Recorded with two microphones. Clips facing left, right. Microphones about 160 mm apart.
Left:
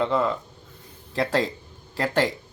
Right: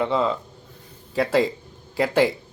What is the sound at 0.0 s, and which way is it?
Speech, 15° right (ahead or behind).